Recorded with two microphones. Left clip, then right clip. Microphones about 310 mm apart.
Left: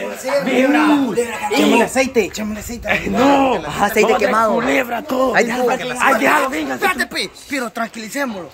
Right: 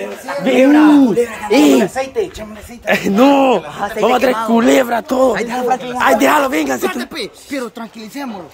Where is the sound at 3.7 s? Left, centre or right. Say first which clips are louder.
Left 4 dB; left.